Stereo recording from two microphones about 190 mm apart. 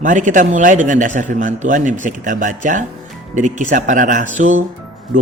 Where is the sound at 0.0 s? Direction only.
40° right (ahead or behind).